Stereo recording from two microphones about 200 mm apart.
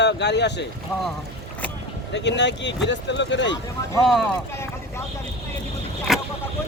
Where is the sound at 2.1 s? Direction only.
60° left (ahead or behind).